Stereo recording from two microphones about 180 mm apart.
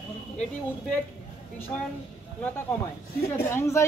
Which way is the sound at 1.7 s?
10° left (ahead or behind).